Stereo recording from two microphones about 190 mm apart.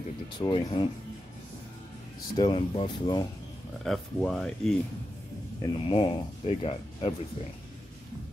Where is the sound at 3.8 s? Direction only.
5° left (ahead or behind).